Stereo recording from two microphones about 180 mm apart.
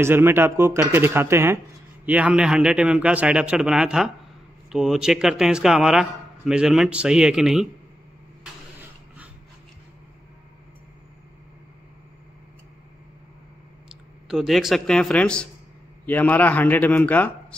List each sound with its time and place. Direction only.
0.0 s a man's voice: 15° right (ahead or behind)
14.2 s a man's voice: 5° right (ahead or behind)